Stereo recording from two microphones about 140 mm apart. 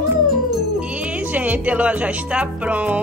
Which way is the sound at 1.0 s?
10° right (ahead or behind).